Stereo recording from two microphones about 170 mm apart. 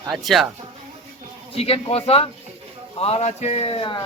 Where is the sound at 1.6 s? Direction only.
35° left (ahead or behind).